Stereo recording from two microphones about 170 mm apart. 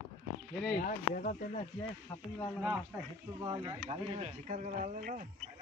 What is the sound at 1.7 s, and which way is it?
Speech, 20° left (ahead or behind).